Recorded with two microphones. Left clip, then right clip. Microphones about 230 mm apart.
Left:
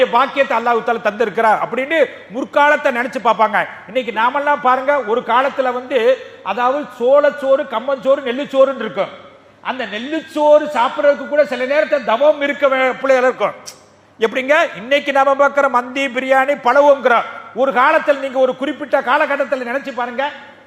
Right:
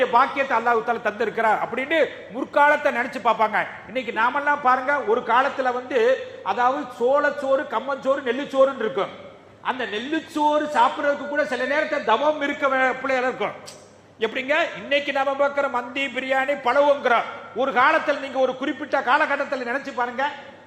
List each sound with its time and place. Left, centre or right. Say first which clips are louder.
0.0 s a man's voice: left 5 dB; left